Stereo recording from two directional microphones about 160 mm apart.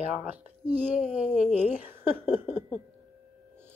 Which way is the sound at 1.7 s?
10° right (ahead or behind).